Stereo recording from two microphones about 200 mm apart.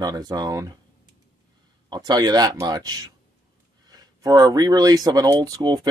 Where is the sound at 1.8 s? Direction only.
20° right (ahead or behind).